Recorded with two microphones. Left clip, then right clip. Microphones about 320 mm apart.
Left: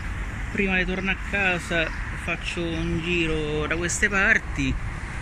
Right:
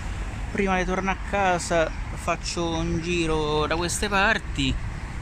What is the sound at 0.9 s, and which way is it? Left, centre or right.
Speech, right.